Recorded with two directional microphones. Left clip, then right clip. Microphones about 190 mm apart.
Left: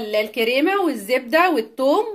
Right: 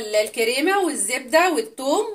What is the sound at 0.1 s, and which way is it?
Speech, 55° left (ahead or behind).